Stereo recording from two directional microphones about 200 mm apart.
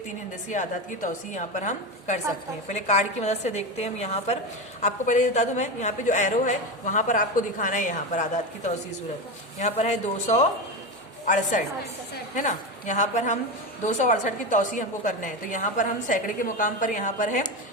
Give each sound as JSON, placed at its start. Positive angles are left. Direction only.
{"t": 0.4, "sound": "a woman's voice", "side_deg": 40}